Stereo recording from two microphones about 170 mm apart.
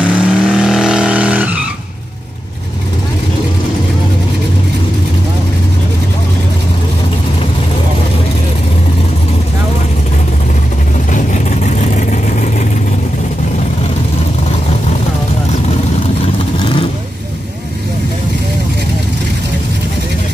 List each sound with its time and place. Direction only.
0.0 s vehicle: 5° right (ahead or behind)
11.1 s vehicle: 45° left (ahead or behind)